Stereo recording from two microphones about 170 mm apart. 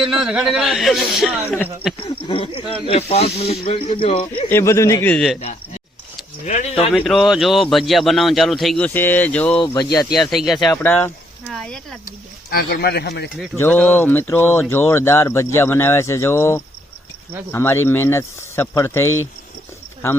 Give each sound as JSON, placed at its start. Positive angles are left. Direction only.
{"t": 0.2, "sound": "a man's voice", "side_deg": -5}
{"t": 2.2, "sound": "speech", "side_deg": 30}
{"t": 4.4, "sound": "speech", "side_deg": 15}
{"t": 5.1, "sound": "a man's voice", "side_deg": 0}
{"t": 6.4, "sound": "speech", "side_deg": 45}
{"t": 6.9, "sound": "a man's voice", "side_deg": 5}
{"t": 9.6, "sound": "speech", "side_deg": 20}
{"t": 10.1, "sound": "a man's voice", "side_deg": 0}
{"t": 10.7, "sound": "speech", "side_deg": 10}
{"t": 12.5, "sound": "speech", "side_deg": 65}
{"t": 13.6, "sound": "speech", "side_deg": 10}